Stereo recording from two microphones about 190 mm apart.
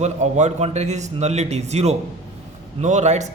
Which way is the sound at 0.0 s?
40° right (ahead or behind).